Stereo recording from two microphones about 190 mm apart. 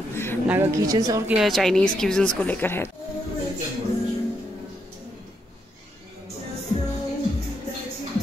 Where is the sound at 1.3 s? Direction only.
Centre (ahead or behind).